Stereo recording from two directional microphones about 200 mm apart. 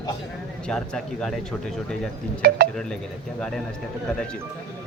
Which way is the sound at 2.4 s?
50° right (ahead or behind).